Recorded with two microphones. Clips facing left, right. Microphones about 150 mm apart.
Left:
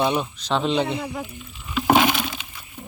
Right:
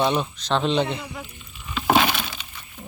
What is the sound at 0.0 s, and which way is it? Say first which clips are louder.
Speech: even; 5° left (ahead or behind).